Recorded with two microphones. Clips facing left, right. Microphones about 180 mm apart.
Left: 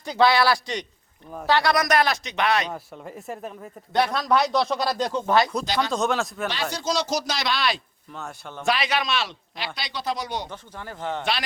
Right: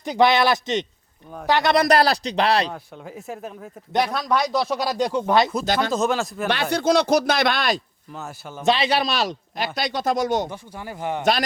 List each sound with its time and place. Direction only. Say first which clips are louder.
0.0 s a man's voice: right 2 dB; 20° right (ahead or behind)
1.7 s a man's voice: right 4 dB; 30° right (ahead or behind)
2.7 s speech: even; centre (ahead or behind); by 5.5 s 15° right (ahead or behind)
5.6 s speech: right 3 dB; 50° right (ahead or behind)
5.9 s speech: right 2 dB; centre (ahead or behind)
6.5 s speech: right 7 dB; 60° right (ahead or behind)
8.1 s speech: right 2 dB; 5° right (ahead or behind)
8.6 s speech: right 4 dB; 25° right (ahead or behind); by 10.5 s 45° right (ahead or behind)
10.5 s speech: right 3 dB; 10° right (ahead or behind)
11.2 s speech: right 9 dB; 45° right (ahead or behind)